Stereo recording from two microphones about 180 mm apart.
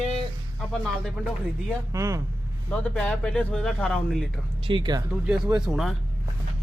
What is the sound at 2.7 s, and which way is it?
Speech, 5° left (ahead or behind).